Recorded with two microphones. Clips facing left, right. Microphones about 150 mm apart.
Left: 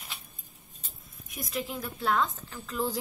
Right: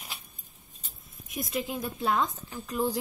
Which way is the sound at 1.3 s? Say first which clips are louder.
Right 3 dB; 25° right (ahead or behind).